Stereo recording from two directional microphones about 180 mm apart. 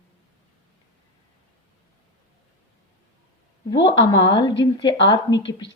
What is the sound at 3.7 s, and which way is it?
A woman's voice, 25° left (ahead or behind).